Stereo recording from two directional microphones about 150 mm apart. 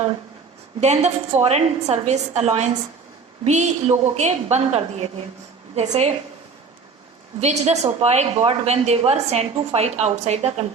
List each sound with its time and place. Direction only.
0.8 s a woman's voice: 45° right (ahead or behind)
7.3 s a woman's voice: 45° right (ahead or behind)